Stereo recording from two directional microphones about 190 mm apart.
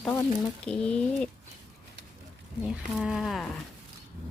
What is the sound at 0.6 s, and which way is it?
Speech, 5° left (ahead or behind).